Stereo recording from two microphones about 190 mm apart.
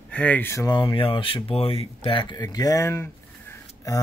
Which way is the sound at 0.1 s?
10° left (ahead or behind).